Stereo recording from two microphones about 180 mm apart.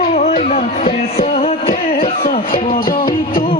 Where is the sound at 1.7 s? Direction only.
55° left (ahead or behind).